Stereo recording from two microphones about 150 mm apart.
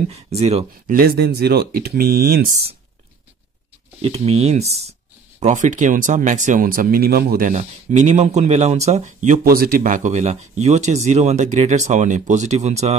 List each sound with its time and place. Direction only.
0.1 s speech: 45° right (ahead or behind)
0.8 s speech: 80° right
4.0 s speech: 45° right (ahead or behind); by 7.5 s 80° right
7.5 s speech: 50° right (ahead or behind)
9.4 s speech: 80° right; by 12.9 s 45° right (ahead or behind)